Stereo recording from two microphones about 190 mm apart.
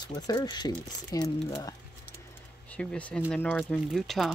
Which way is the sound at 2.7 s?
5° left (ahead or behind).